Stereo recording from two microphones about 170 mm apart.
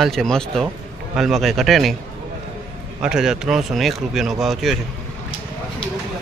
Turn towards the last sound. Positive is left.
turn(degrees=0)  # may be behind; listen again after turning